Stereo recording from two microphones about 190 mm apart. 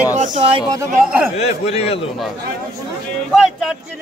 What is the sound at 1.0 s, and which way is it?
Speech, 5° right (ahead or behind).